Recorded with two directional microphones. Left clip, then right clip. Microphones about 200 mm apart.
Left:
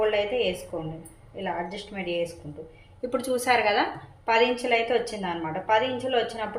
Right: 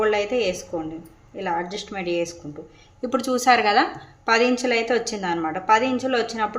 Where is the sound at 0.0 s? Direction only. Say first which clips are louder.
Right 3 dB; 40° right (ahead or behind).